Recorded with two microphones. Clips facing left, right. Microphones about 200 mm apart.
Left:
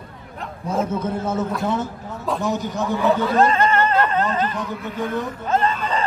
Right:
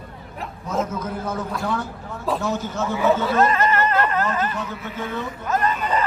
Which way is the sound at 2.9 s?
Centre (ahead or behind).